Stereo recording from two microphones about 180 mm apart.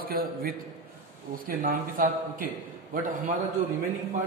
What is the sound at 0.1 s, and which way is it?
Speech, 55° right (ahead or behind).